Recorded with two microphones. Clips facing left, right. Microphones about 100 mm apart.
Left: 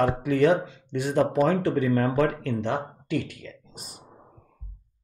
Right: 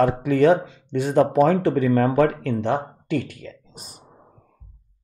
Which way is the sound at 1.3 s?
40° right (ahead or behind).